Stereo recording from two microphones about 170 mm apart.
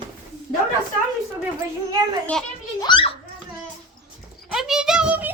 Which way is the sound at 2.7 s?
30° left (ahead or behind).